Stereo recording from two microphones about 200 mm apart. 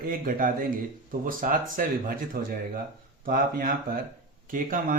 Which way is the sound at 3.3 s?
45° right (ahead or behind).